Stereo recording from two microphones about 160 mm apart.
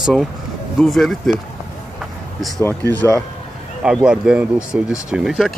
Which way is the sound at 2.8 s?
20° right (ahead or behind).